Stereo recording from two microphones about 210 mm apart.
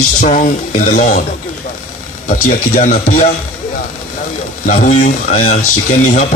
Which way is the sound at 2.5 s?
35° left (ahead or behind).